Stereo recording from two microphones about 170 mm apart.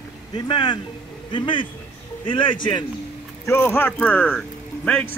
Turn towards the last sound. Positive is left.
turn(degrees=5)  # may be behind; listen again after turning